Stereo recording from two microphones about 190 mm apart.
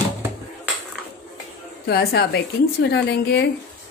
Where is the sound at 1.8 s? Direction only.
55° left (ahead or behind).